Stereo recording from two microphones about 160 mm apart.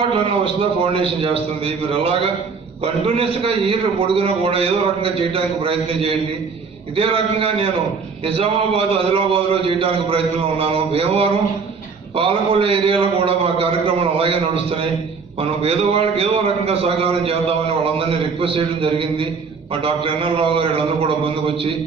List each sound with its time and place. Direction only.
0.0 s a man's voice: 30° right (ahead or behind)
2.8 s a man's voice: 35° right (ahead or behind)